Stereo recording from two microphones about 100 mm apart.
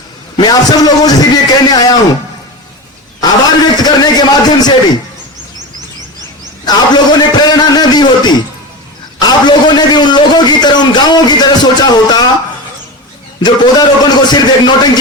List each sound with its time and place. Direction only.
0.3 s a man's voice: 40° left (ahead or behind)
3.2 s a man's voice: 45° left (ahead or behind)
6.7 s a man's voice: 45° left (ahead or behind)
9.2 s a sound: 45° left (ahead or behind)
13.4 s a man's voice: 45° left (ahead or behind)